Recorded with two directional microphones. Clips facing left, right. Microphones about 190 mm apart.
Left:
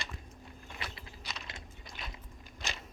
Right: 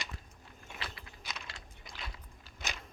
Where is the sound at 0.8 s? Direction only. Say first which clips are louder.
Even; 20° left (ahead or behind).